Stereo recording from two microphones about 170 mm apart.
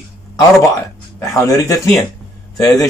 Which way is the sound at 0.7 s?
15° left (ahead or behind).